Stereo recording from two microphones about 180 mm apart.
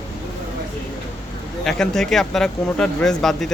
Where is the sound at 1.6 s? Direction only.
Centre (ahead or behind).